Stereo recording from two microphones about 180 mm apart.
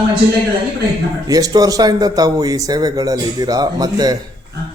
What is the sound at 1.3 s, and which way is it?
A man's voice, 20° right (ahead or behind).